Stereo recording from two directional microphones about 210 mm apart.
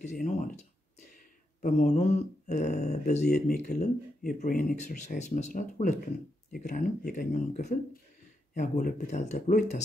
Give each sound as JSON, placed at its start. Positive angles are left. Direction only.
{"t": 0.0, "sound": "speech", "side_deg": 35}
{"t": 1.6, "sound": "speech", "side_deg": 35}
{"t": 3.3, "sound": "speech", "side_deg": 45}